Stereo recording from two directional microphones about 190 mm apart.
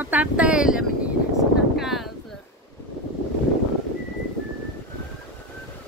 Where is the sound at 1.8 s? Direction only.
Centre (ahead or behind).